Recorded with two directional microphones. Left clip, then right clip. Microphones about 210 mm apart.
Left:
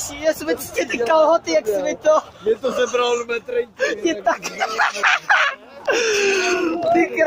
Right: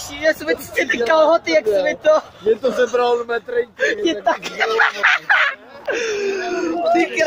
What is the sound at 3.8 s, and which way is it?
Speech, centre (ahead or behind).